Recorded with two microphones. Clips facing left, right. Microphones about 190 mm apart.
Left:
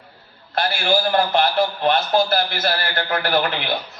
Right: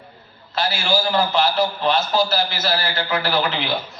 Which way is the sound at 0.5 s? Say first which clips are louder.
Left 1 dB; 55° left (ahead or behind).